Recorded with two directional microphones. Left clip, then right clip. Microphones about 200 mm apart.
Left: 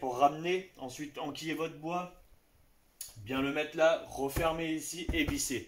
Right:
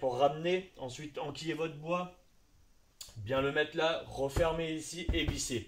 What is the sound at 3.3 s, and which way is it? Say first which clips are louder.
Speech: even; 15° right (ahead or behind).